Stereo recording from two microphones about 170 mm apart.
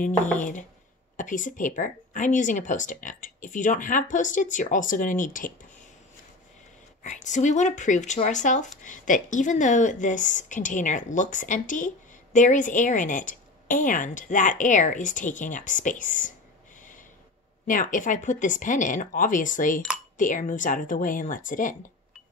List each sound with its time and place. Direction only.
0.4 s speech: 50° left (ahead or behind)
7.0 s speech: 45° left (ahead or behind)
17.6 s speech: 50° left (ahead or behind)